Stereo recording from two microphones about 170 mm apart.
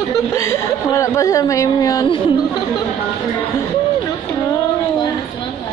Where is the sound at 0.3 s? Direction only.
15° left (ahead or behind).